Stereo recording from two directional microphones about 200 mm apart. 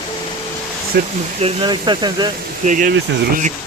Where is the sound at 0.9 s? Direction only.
55° right (ahead or behind).